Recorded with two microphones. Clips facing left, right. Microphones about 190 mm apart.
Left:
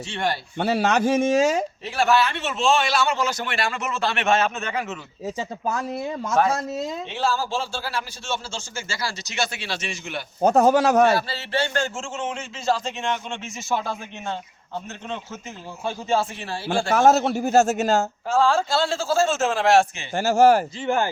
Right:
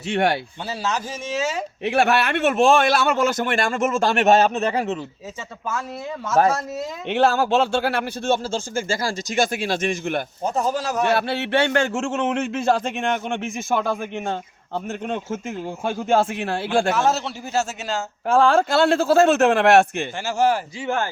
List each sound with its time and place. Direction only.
0.1 s a man's voice: 60° right (ahead or behind)
0.6 s speech: 60° left (ahead or behind)
1.8 s a man's voice: 60° right (ahead or behind); by 4.9 s 35° right (ahead or behind)
7.1 s a man's voice: 60° right (ahead or behind)
10.4 s speech: 65° left (ahead or behind)
11.1 s a man's voice: 60° right (ahead or behind)
16.9 s a man's voice: 50° left (ahead or behind)
18.3 s a man's voice: 55° right (ahead or behind)
20.1 s a man's voice: 45° left (ahead or behind)